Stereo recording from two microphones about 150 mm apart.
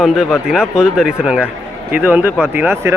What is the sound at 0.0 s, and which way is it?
Speech, centre (ahead or behind).